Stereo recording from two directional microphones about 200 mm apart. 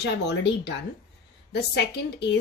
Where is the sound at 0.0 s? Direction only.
55° left (ahead or behind).